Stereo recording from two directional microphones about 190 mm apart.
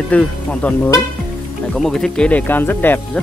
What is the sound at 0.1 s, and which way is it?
Speech, 5° left (ahead or behind).